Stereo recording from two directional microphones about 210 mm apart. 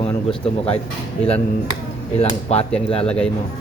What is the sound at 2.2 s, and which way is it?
Speech, 30° left (ahead or behind).